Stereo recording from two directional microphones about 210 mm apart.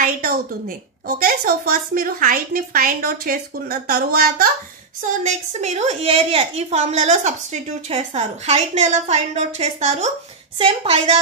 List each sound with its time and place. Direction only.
0.0 s a woman's voice: 40° right (ahead or behind)
5.2 s a woman's voice: 35° right (ahead or behind)